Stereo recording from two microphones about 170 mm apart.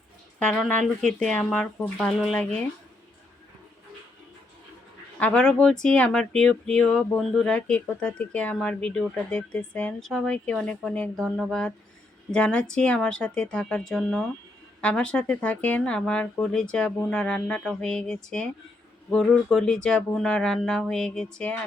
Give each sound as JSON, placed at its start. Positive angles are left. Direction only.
{"t": 0.4, "sound": "speech", "side_deg": 5}
{"t": 5.2, "sound": "speech", "side_deg": 5}